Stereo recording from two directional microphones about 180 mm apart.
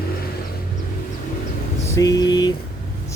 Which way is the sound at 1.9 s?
20° left (ahead or behind).